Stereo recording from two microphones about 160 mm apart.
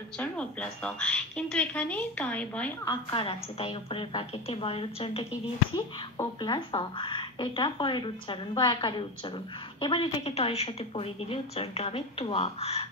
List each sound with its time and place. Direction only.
0.2 s a woman's voice: 10° left (ahead or behind)
2.8 s a woman's voice: 30° left (ahead or behind)
6.4 s a woman's voice: 30° left (ahead or behind)